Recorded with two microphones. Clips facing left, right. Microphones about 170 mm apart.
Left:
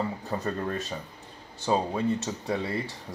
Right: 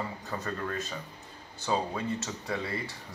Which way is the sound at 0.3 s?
25° left (ahead or behind).